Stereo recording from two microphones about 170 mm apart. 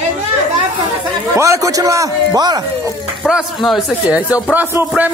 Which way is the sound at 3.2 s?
Centre (ahead or behind).